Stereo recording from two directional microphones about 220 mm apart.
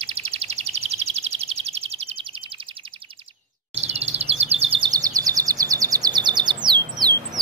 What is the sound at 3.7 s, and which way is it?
Bird vocalization, 30° right (ahead or behind).